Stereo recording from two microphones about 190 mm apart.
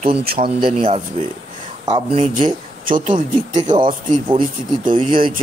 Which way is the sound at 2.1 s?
30° right (ahead or behind).